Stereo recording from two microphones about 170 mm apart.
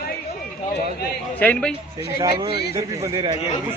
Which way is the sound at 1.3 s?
10° left (ahead or behind).